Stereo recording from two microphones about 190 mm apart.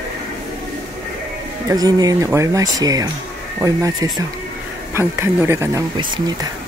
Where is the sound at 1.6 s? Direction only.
20° right (ahead or behind).